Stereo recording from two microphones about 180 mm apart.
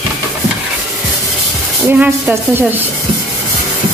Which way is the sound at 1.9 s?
10° right (ahead or behind).